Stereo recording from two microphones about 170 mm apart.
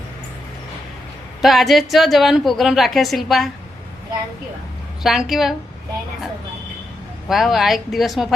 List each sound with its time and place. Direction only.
1.4 s a woman's voice: centre (ahead or behind)
5.0 s a woman's voice: centre (ahead or behind)
7.3 s a woman's voice: centre (ahead or behind)